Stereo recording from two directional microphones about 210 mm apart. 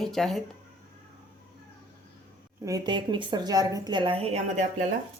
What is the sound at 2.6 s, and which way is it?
A woman's voice, 20° right (ahead or behind).